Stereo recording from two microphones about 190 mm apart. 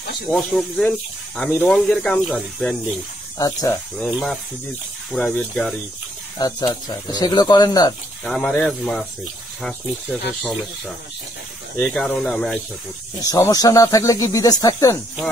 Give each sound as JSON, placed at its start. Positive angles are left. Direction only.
{"t": 0.3, "sound": "speech", "side_deg": 0}
{"t": 3.3, "sound": "speech", "side_deg": 20}
{"t": 4.0, "sound": "speech", "side_deg": 5}
{"t": 6.3, "sound": "speech", "side_deg": 20}
{"t": 8.2, "sound": "speech", "side_deg": 5}
{"t": 11.8, "sound": "speech", "side_deg": 5}
{"t": 13.2, "sound": "speech", "side_deg": 20}